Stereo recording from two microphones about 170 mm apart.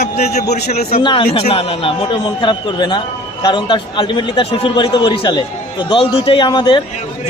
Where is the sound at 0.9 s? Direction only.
30° left (ahead or behind).